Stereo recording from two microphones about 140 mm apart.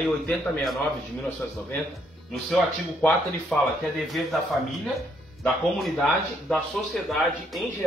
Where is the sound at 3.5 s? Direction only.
Centre (ahead or behind).